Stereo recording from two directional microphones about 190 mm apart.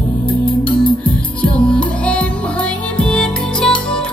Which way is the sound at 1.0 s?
5° left (ahead or behind).